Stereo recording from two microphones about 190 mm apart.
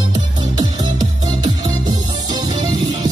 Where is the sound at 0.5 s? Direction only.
20° right (ahead or behind).